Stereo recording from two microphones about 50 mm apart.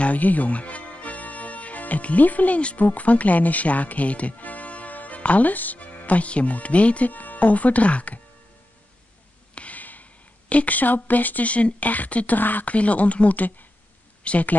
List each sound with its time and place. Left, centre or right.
0.0 s speech: left
9.6 s a sound: left
10.5 s speech: left